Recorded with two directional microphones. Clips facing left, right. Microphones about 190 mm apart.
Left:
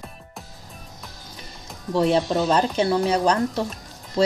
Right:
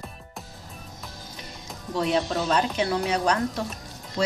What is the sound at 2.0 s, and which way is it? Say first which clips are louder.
Speech: left 5 dB; 30° left (ahead or behind).